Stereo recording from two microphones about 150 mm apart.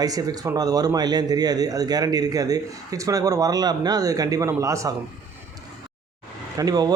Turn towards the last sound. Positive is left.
turn(degrees=-25)  # may be behind; listen again after turning